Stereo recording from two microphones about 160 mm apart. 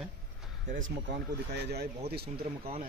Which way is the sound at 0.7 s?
55° right (ahead or behind).